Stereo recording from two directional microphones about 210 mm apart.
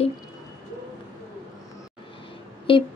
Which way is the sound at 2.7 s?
25° left (ahead or behind).